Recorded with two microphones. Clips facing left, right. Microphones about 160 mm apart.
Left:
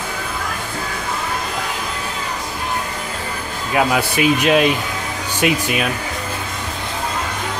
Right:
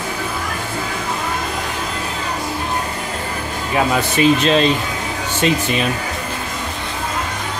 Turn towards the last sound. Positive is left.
turn(degrees=10)  # may be behind; listen again after turning